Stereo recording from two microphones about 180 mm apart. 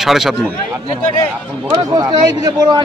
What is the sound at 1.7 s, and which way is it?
Speech, 20° right (ahead or behind).